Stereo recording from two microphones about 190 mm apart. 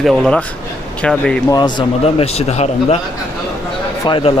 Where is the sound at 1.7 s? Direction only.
30° left (ahead or behind).